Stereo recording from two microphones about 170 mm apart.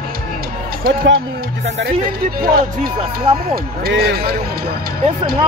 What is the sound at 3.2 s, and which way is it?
Speech, 30° right (ahead or behind).